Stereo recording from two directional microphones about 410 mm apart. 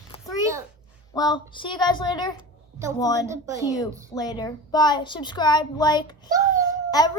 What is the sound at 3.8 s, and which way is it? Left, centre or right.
A child's voice, centre.